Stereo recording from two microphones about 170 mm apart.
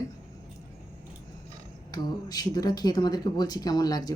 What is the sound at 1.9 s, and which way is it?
Speech, 20° left (ahead or behind).